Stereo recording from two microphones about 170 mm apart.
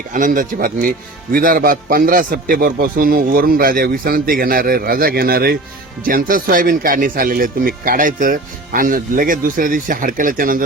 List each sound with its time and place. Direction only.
0.1 s speech: 50° right (ahead or behind)